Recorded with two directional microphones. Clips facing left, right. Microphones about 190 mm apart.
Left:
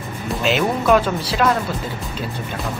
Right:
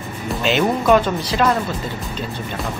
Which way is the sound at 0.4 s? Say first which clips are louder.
Right 1 dB; 5° left (ahead or behind).